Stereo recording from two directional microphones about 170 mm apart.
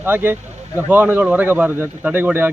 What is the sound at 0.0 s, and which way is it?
Speech, 10° right (ahead or behind).